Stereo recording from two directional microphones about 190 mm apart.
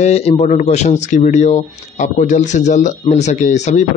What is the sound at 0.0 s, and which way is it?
A man's voice, 35° left (ahead or behind).